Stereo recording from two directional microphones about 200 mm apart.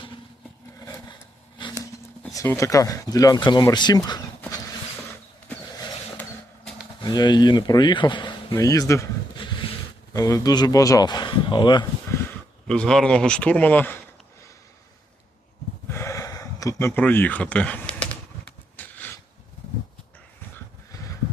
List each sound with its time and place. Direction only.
0.8 s a sound: 20° left (ahead or behind)
2.3 s speech: 15° left (ahead or behind)
4.4 s vehicle: 15° left (ahead or behind)
7.0 s speech: 20° left (ahead or behind)
12.6 s a man's voice: 5° left (ahead or behind)
15.9 s a sound: 15° left (ahead or behind)